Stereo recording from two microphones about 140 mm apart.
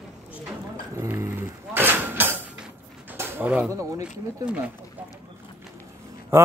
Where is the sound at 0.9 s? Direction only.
20° right (ahead or behind).